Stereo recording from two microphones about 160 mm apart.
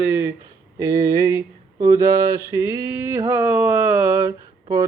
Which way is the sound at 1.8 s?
20° right (ahead or behind).